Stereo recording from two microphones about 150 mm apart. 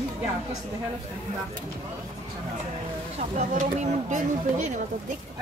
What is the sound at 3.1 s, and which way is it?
A woman's voice, 50° right (ahead or behind).